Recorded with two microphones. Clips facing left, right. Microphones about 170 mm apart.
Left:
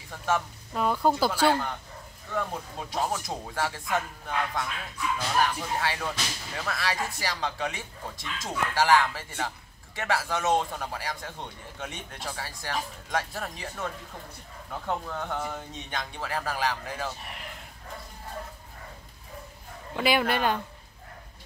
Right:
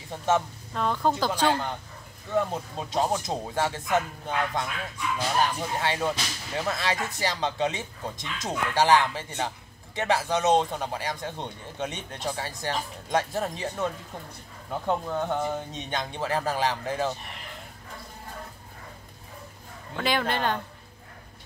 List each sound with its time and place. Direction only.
0.7 s speech: 10° left (ahead or behind)
2.3 s speech: 25° right (ahead or behind)
5.8 s speech: 25° right (ahead or behind)
20.0 s speech: 10° left (ahead or behind)